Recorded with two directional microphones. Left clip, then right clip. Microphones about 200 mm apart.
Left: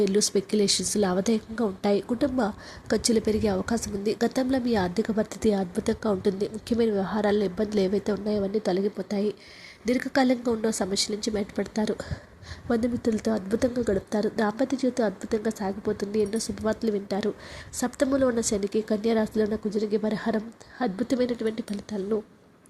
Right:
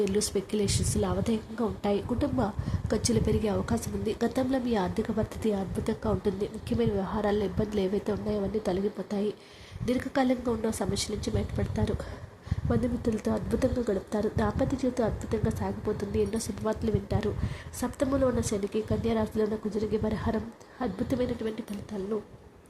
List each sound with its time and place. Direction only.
0.0 s a woman's voice: 20° left (ahead or behind)